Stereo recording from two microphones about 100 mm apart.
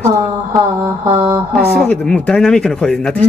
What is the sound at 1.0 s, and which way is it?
Mantra, 55° right (ahead or behind).